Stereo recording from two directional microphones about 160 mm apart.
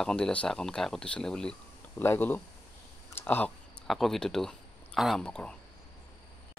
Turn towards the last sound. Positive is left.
turn(degrees=5)  # may be behind; listen again after turning